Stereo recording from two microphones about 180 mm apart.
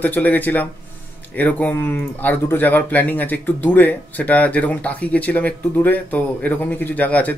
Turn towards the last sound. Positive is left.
turn(degrees=10)  # may be behind; listen again after turning